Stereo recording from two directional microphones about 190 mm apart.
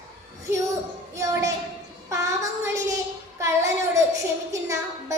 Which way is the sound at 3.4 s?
15° right (ahead or behind).